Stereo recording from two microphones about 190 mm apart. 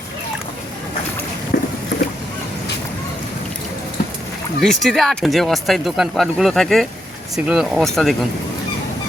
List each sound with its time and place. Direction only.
1.5 s boat: 55° left (ahead or behind)
4.6 s speech: centre (ahead or behind)